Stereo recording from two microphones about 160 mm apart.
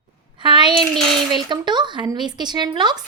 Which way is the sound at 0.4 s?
30° right (ahead or behind).